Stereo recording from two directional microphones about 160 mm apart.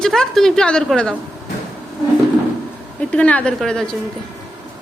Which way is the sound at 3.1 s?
10° left (ahead or behind).